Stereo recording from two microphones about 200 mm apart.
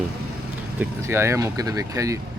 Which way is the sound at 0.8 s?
15° right (ahead or behind).